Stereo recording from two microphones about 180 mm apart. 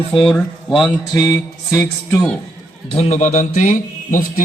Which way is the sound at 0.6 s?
Centre (ahead or behind).